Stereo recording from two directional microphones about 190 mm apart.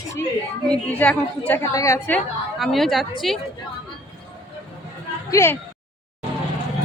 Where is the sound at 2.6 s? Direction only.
Centre (ahead or behind).